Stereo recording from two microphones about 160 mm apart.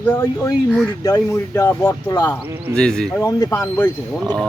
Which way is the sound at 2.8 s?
5° left (ahead or behind).